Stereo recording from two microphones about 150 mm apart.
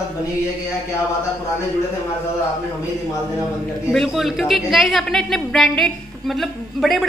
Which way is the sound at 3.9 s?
Centre (ahead or behind).